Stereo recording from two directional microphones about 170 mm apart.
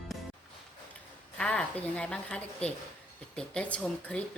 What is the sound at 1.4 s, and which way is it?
A woman's voice, 5° left (ahead or behind).